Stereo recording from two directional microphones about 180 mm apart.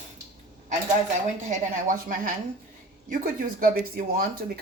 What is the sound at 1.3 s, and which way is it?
A woman's voice, 45° right (ahead or behind).